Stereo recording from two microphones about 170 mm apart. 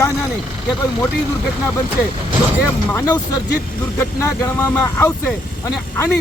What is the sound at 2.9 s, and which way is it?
Speech, 20° left (ahead or behind).